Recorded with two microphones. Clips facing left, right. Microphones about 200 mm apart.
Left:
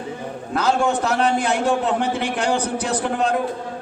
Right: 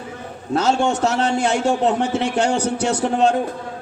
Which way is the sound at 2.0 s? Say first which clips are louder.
Right 3 dB; 35° left (ahead or behind).